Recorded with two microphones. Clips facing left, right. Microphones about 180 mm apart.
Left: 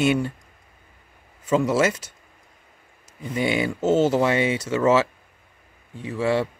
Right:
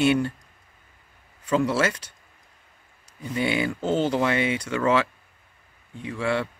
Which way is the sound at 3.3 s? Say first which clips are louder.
Left 2 dB; 10° left (ahead or behind).